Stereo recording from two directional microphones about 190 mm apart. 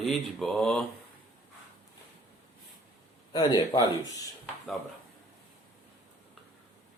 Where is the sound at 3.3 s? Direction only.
25° left (ahead or behind).